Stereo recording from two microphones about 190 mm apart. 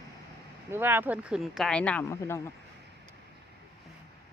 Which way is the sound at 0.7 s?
10° right (ahead or behind).